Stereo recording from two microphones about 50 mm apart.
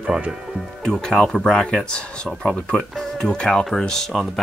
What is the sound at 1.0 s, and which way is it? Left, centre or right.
Speech, centre.